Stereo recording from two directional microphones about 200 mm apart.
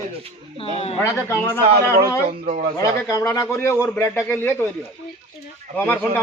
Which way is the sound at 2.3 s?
40° right (ahead or behind).